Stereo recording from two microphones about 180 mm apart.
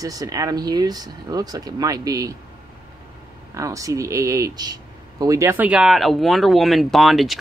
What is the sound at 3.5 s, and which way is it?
Speech, 20° right (ahead or behind).